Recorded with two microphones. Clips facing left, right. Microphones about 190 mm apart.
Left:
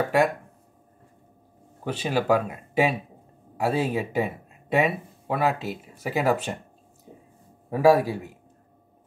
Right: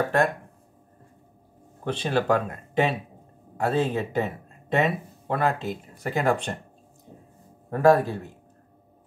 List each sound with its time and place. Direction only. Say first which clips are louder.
1.9 s speech: even; 5° left (ahead or behind)
7.1 s a sound: left 1 dB; 5° left (ahead or behind)
7.7 s speech: even; 5° left (ahead or behind)